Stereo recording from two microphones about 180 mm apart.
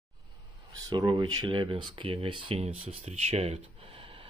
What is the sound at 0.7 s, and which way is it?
Speech, 25° right (ahead or behind).